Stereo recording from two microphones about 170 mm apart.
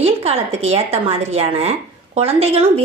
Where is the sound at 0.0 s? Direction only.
35° right (ahead or behind).